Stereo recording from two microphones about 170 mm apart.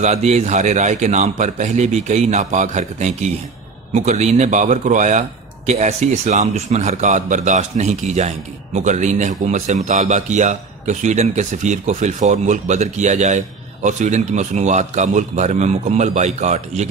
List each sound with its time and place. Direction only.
0.0 s a man's voice: 40° right (ahead or behind)